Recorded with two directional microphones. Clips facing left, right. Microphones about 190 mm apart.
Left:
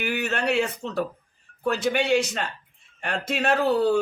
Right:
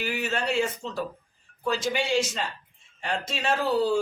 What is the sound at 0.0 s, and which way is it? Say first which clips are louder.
A man's voice: left 3 dB; 60° left (ahead or behind).